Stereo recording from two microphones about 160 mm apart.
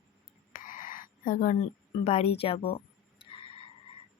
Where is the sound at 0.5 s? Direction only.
55° left (ahead or behind).